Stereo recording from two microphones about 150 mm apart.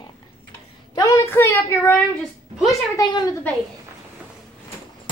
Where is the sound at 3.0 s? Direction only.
25° left (ahead or behind).